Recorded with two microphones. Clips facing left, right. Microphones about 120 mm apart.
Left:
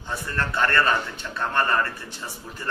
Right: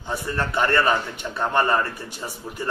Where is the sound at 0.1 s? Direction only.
15° right (ahead or behind).